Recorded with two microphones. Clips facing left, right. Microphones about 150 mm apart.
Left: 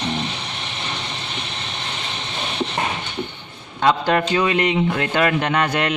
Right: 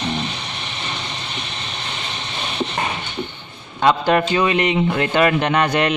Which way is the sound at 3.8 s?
15° right (ahead or behind).